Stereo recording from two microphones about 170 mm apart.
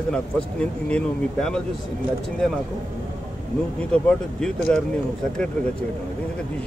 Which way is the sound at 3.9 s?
5° left (ahead or behind).